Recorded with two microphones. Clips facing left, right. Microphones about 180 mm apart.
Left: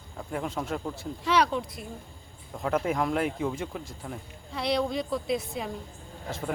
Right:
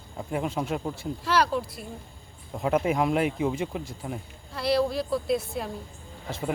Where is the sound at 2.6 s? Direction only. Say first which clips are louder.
Right 3 dB; 15° right (ahead or behind).